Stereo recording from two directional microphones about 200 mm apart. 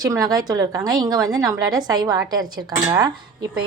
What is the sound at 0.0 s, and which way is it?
A woman's voice, 15° right (ahead or behind).